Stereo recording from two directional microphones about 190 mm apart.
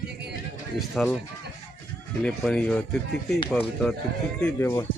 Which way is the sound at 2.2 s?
5° left (ahead or behind).